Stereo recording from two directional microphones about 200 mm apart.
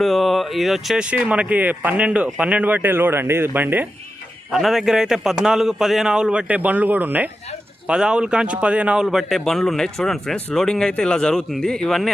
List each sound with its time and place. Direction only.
0.0 s a man's voice: centre (ahead or behind)